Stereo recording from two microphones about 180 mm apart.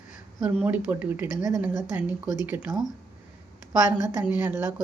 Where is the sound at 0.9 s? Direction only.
10° right (ahead or behind).